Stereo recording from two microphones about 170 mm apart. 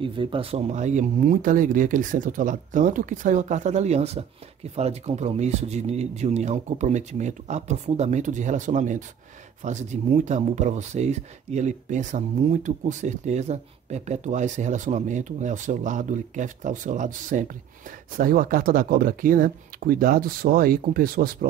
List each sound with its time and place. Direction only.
0.0 s speech: 30° right (ahead or behind); by 21.5 s 55° right (ahead or behind)